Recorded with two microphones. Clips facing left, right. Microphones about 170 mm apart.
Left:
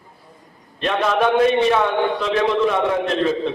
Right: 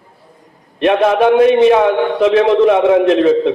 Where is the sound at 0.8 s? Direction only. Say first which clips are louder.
Right 8 dB; 60° right (ahead or behind).